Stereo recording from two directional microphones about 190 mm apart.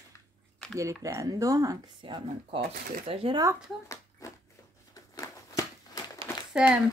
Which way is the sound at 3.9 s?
15° left (ahead or behind).